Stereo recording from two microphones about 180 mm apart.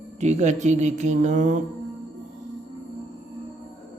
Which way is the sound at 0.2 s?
40° right (ahead or behind).